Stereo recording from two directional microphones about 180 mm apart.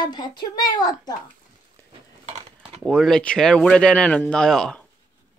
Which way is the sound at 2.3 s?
35° right (ahead or behind).